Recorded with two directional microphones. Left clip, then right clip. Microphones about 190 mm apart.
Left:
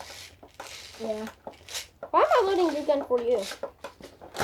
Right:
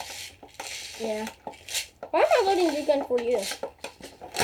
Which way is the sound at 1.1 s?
40° right (ahead or behind).